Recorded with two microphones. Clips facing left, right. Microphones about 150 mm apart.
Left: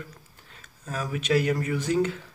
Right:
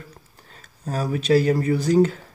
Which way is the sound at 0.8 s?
35° right (ahead or behind).